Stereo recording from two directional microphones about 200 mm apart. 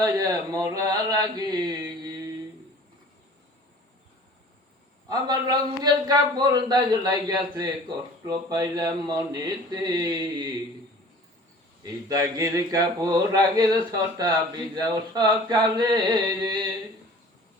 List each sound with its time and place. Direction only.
0.0 s a man's voice: 20° right (ahead or behind)
5.0 s a man's voice: 20° right (ahead or behind)
11.8 s a man's voice: 20° right (ahead or behind)